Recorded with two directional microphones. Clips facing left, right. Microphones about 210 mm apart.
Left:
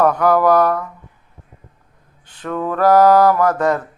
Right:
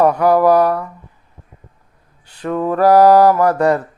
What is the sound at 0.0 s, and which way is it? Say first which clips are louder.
Speech: right 2 dB; 10° right (ahead or behind).